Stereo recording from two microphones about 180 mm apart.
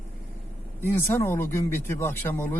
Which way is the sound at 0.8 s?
10° left (ahead or behind).